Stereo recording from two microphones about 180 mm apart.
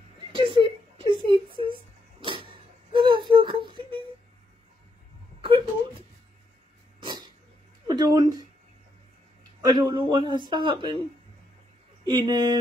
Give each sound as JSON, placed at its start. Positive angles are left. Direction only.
{"t": 0.3, "sound": "whimper", "side_deg": -25}
{"t": 2.2, "sound": "a sound", "side_deg": -30}
{"t": 5.4, "sound": "wail", "side_deg": -30}
{"t": 7.8, "sound": "a sound", "side_deg": -20}
{"t": 9.6, "sound": "speech", "side_deg": -20}
{"t": 12.0, "sound": "speech", "side_deg": -25}